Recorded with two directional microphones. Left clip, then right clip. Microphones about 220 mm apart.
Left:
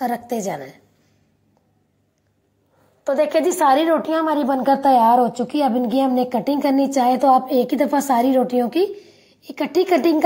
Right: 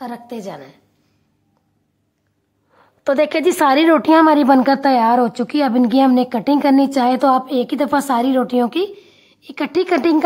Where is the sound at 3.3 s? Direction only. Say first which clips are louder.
Right 2 dB; 45° right (ahead or behind).